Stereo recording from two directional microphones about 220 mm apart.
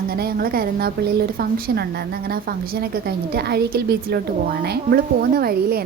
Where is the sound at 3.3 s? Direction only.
45° right (ahead or behind).